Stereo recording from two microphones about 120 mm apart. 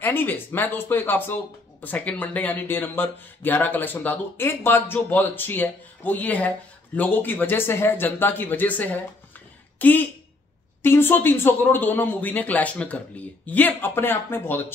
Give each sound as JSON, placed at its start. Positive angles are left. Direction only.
{"t": 0.0, "sound": "speech", "side_deg": 15}